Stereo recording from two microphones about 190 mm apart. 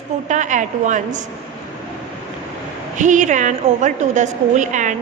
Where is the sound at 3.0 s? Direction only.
40° right (ahead or behind).